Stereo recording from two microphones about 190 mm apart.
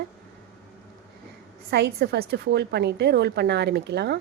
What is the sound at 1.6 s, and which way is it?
A woman's voice, 60° right (ahead or behind).